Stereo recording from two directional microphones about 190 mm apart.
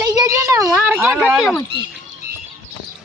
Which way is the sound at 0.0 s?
15° right (ahead or behind).